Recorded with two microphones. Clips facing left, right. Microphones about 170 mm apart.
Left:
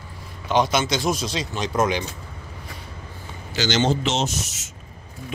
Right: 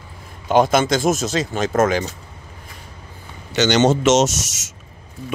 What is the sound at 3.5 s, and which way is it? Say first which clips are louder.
Speech: right 6 dB; 70° right (ahead or behind).